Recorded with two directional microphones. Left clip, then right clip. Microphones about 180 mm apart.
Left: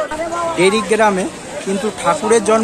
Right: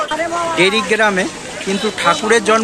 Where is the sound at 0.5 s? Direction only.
5° left (ahead or behind).